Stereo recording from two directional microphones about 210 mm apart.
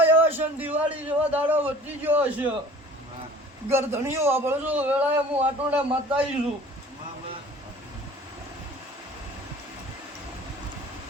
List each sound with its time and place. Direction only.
0.0 s a man's voice: 10° right (ahead or behind)
3.7 s a man's voice: 10° right (ahead or behind)